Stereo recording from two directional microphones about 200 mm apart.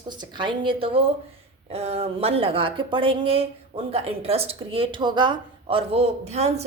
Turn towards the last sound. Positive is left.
turn(degrees=-35)  # may be behind; listen again after turning